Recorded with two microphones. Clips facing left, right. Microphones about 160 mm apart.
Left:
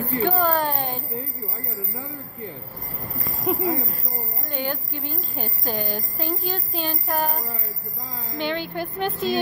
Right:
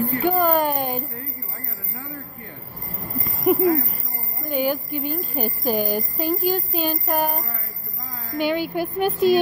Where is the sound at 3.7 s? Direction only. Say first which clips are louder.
Right 4 dB; 20° left (ahead or behind).